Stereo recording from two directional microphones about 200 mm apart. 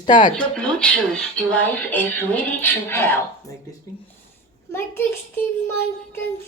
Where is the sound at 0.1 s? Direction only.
40° left (ahead or behind).